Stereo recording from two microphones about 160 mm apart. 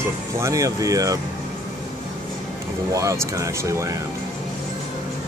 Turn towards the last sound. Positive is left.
turn(degrees=-20)  # may be behind; listen again after turning